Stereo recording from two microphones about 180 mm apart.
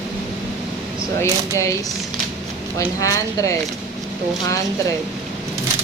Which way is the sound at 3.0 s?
20° left (ahead or behind).